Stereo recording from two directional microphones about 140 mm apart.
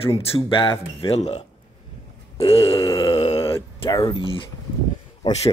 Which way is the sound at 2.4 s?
45° left (ahead or behind).